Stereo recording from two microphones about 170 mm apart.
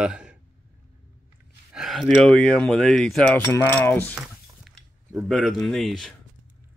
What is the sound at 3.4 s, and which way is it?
Mechanisms, 20° left (ahead or behind).